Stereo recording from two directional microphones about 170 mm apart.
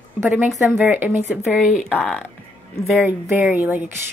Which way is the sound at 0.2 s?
10° right (ahead or behind).